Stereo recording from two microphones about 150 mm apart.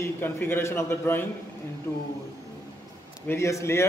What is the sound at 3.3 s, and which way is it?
Speech, 20° left (ahead or behind).